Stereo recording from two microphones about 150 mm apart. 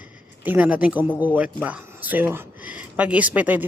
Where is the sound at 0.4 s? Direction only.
10° right (ahead or behind).